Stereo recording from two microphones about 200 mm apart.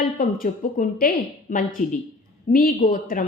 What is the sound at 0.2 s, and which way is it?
A woman's voice, 45° left (ahead or behind).